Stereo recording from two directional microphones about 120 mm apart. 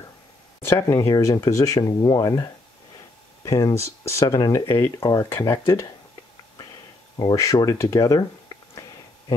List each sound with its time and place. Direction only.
0.6 s speech: 25° left (ahead or behind)
7.6 s speech: 25° left (ahead or behind)